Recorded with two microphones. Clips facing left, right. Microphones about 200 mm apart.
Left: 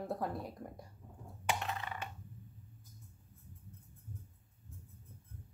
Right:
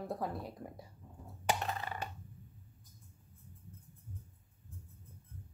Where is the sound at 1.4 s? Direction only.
35° right (ahead or behind).